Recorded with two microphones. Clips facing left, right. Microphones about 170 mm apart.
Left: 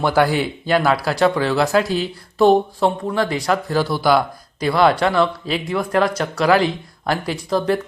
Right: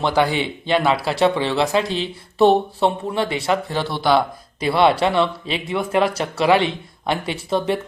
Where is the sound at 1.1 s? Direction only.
30° right (ahead or behind).